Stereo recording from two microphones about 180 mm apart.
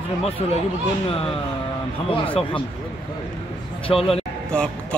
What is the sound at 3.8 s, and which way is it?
Speech, 30° left (ahead or behind).